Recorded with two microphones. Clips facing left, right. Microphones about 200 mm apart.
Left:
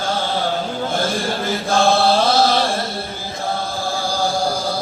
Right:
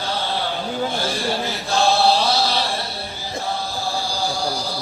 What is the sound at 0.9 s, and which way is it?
Chant, 50° left (ahead or behind).